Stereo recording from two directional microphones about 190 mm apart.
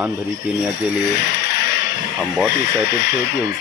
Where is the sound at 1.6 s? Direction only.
60° left (ahead or behind).